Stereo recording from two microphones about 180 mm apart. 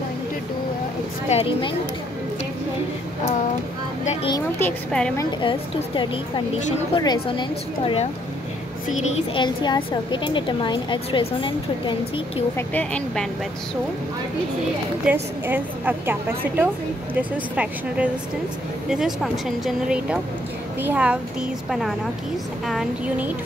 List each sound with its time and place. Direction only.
1.3 s speech: 35° left (ahead or behind)
4.0 s speech: 40° left (ahead or behind)
4.3 s a woman's voice: 10° left (ahead or behind)
5.4 s a woman's voice: 25° left (ahead or behind)
9.1 s a woman's voice: 25° left (ahead or behind)
12.5 s a woman's voice: 10° left (ahead or behind)
15.1 s a woman's voice: 5° right (ahead or behind)